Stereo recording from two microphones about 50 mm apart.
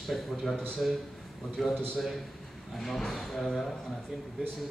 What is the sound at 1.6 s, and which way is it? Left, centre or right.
A man's voice, centre.